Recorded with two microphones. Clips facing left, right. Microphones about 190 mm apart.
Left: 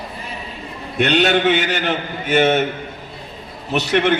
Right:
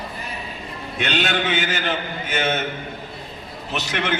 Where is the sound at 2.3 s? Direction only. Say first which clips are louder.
Left 9 dB; 65° left (ahead or behind).